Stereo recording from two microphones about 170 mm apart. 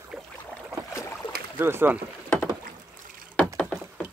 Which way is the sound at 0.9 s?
20° left (ahead or behind).